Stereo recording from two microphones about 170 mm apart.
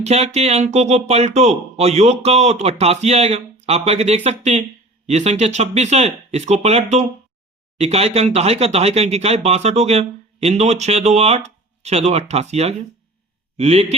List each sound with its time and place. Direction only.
0.0 s speech: 40° right (ahead or behind)